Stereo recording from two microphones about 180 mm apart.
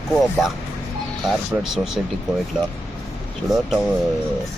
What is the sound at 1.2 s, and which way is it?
Speech, centre (ahead or behind).